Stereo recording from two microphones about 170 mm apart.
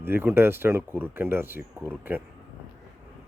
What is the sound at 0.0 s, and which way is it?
Speech, 15° right (ahead or behind).